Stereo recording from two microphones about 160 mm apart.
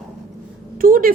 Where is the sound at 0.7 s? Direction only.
60° right (ahead or behind).